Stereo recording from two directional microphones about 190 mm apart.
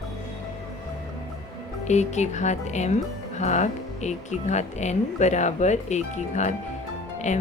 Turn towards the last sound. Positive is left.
turn(degrees=40)  # may be behind; listen again after turning